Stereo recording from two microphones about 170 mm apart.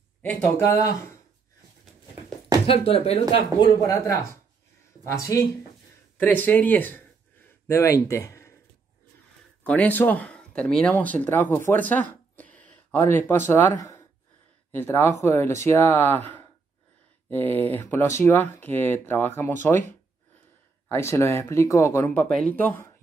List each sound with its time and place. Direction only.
0.2 s speech: 10° left (ahead or behind)
2.6 s speech: 35° left (ahead or behind); by 5.5 s 20° left (ahead or behind)
6.7 s a sound: 10° left (ahead or behind)
9.6 s speech: 10° left (ahead or behind)
20.9 s speech: 15° left (ahead or behind)